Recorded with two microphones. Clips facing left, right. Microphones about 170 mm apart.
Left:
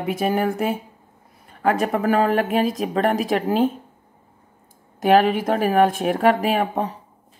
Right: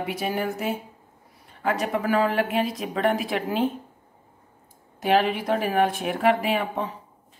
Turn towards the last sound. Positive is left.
turn(degrees=40)  # may be behind; listen again after turning